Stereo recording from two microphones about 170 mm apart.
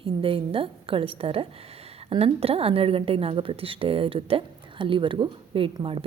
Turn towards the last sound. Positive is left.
turn(degrees=-30)  # may be behind; listen again after turning